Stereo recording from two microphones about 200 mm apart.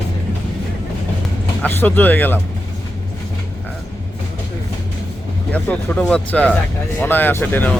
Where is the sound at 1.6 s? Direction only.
10° left (ahead or behind).